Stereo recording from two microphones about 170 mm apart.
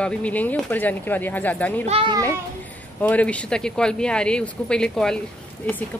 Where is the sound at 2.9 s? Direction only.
10° left (ahead or behind).